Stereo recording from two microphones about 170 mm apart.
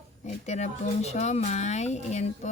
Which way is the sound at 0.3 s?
40° left (ahead or behind).